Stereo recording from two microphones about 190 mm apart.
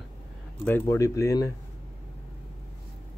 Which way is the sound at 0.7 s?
15° left (ahead or behind).